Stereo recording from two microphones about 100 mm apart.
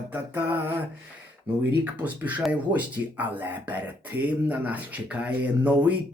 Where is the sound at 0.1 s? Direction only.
20° right (ahead or behind).